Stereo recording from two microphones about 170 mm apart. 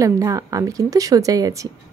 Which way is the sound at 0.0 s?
20° right (ahead or behind).